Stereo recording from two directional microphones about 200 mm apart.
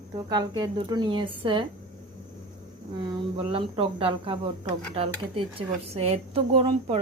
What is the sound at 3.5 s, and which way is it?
Speech, 25° right (ahead or behind).